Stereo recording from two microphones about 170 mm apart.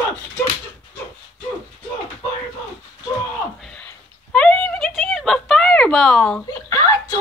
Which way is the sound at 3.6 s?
5° left (ahead or behind).